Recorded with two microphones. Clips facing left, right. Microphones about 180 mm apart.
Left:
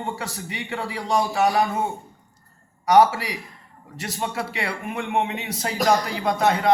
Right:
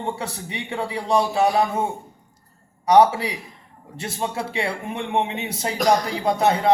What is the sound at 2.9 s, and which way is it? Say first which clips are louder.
A man's voice: right 1 dB; 25° right (ahead or behind).